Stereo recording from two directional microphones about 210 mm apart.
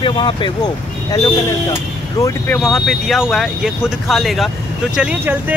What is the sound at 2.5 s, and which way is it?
Speech, centre (ahead or behind).